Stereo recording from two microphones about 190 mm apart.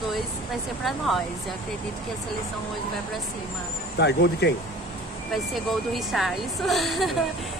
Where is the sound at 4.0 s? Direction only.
65° left (ahead or behind).